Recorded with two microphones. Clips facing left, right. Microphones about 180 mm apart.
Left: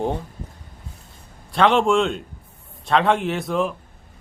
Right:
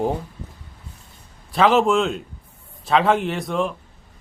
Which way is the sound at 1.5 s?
Centre (ahead or behind).